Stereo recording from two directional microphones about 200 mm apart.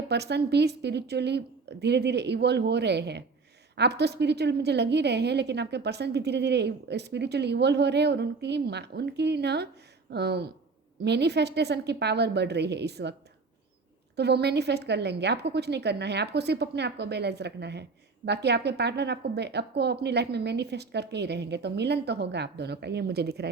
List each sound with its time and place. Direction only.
0.1 s a woman's voice: 55° right (ahead or behind)
14.2 s a woman's voice: 55° right (ahead or behind)